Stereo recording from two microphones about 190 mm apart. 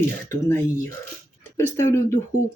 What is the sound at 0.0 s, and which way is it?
Speech, 15° left (ahead or behind).